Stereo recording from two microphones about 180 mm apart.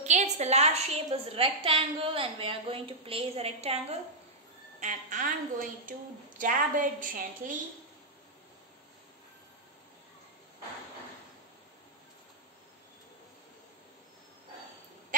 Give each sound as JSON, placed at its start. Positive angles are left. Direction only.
{"t": 0.0, "sound": "a woman's voice", "side_deg": -40}